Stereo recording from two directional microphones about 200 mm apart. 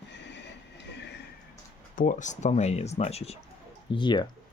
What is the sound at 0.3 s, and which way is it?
Train, 60° left (ahead or behind).